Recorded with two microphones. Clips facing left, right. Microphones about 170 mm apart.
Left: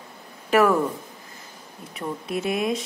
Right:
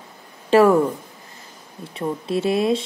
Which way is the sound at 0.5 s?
30° right (ahead or behind).